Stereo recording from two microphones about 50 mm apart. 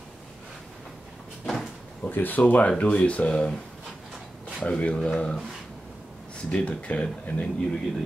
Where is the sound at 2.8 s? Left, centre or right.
Left.